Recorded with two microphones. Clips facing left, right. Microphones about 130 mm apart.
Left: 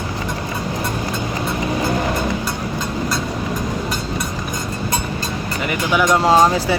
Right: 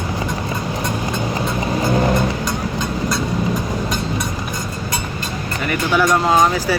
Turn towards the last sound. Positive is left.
turn(degrees=30)  # may be behind; listen again after turning